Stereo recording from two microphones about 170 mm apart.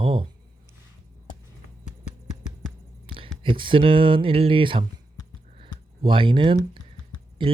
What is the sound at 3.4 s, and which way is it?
Speech, 30° right (ahead or behind).